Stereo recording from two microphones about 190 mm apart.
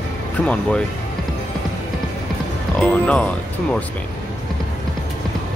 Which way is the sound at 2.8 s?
5° left (ahead or behind).